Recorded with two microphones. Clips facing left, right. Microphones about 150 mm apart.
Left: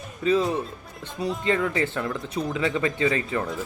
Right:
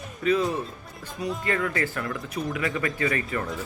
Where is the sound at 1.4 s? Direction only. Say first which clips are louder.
Left 3 dB; 20° left (ahead or behind).